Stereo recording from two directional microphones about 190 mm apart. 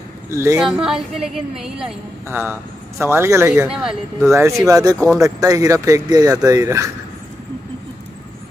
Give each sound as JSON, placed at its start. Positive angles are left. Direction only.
{"t": 0.3, "sound": "speech", "side_deg": -15}
{"t": 0.6, "sound": "a woman's voice", "side_deg": -5}
{"t": 3.6, "sound": "a woman's voice", "side_deg": -5}
{"t": 4.2, "sound": "speech", "side_deg": -15}